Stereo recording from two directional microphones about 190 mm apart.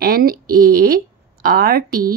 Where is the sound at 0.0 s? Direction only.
50° right (ahead or behind).